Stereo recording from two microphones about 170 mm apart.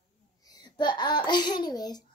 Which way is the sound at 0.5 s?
25° left (ahead or behind).